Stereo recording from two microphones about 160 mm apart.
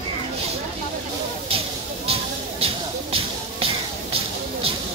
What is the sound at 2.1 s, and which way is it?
Music, 35° right (ahead or behind).